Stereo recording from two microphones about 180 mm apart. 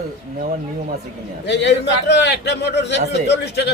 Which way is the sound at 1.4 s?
75° left (ahead or behind).